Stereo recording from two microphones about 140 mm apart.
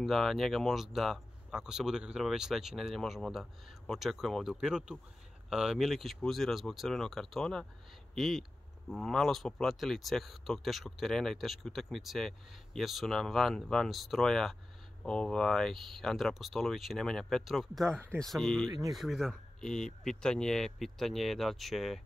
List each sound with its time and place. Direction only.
0.0 s speech: centre (ahead or behind)
17.8 s speech: 20° right (ahead or behind)
18.2 s speech: 5° left (ahead or behind)
18.7 s speech: 25° right (ahead or behind)
18.9 s speech: centre (ahead or behind)